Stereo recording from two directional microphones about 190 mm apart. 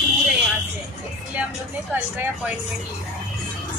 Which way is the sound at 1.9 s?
10° right (ahead or behind).